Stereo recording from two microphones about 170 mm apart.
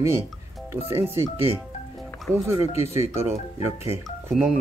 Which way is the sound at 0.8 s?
15° right (ahead or behind).